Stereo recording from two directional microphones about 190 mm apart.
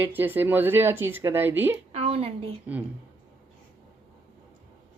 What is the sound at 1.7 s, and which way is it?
Speech, 30° right (ahead or behind).